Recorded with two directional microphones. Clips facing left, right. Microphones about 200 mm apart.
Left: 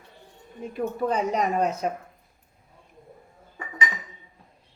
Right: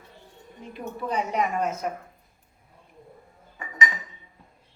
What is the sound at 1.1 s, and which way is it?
Speech, 40° left (ahead or behind).